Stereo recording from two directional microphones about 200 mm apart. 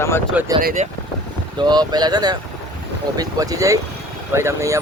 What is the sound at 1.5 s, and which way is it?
Speech, 20° right (ahead or behind).